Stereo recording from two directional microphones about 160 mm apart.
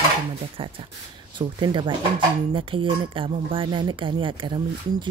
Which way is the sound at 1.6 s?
30° right (ahead or behind).